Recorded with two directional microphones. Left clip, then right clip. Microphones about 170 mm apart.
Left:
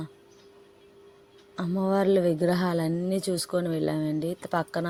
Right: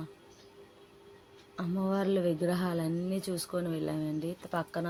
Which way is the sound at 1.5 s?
45° left (ahead or behind).